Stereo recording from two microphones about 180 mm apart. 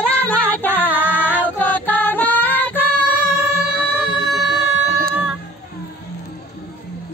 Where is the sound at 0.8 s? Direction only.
10° right (ahead or behind).